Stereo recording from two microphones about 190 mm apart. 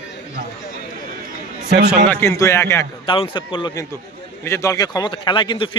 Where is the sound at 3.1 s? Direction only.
25° left (ahead or behind).